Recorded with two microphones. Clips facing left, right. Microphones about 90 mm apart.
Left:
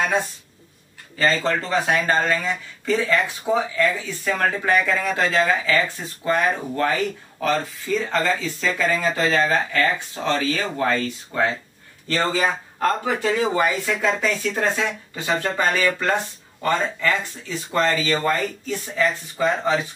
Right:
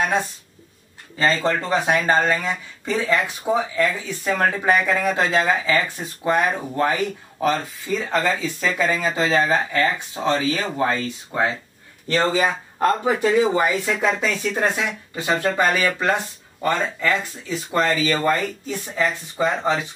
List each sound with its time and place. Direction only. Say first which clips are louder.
1.1 s speech: right 1 dB; 20° right (ahead or behind)
19.3 s speech: right 1 dB; 25° right (ahead or behind)